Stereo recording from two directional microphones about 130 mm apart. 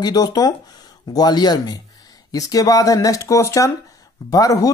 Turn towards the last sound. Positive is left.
turn(degrees=25)  # may be behind; listen again after turning